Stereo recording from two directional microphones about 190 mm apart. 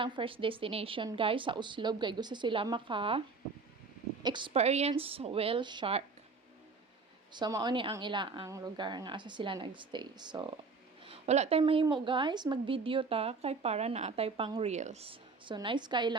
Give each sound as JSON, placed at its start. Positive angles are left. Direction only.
{"t": 0.0, "sound": "a woman's voice", "side_deg": -25}
{"t": 7.3, "sound": "a woman's voice", "side_deg": -20}
{"t": 11.0, "sound": "a woman's voice", "side_deg": -35}